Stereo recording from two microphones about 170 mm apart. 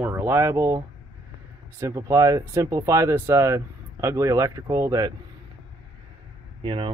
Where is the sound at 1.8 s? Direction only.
20° right (ahead or behind).